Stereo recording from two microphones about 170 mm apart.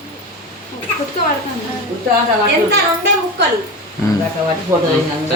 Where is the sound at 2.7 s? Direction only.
75° right (ahead or behind).